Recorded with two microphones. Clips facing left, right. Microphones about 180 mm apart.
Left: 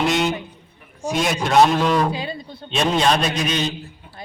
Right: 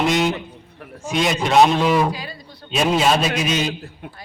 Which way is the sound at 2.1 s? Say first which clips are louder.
Left 2 dB; 25° left (ahead or behind).